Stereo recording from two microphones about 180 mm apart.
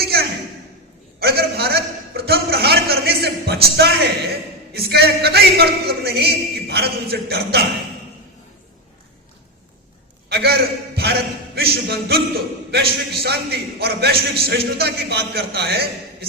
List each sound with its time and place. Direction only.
0.0 s a sound: 60° right (ahead or behind)
4.7 s a man's voice: 60° right (ahead or behind)
10.2 s a man's voice: 65° right (ahead or behind)